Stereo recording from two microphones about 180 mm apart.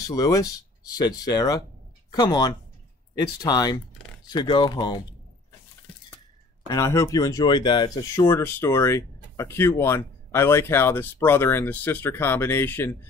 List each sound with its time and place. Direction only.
0.0 s speech: 20° left (ahead or behind)
6.7 s speech: 15° left (ahead or behind)